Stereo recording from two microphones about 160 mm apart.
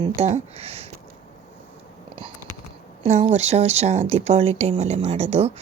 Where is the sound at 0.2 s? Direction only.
40° right (ahead or behind).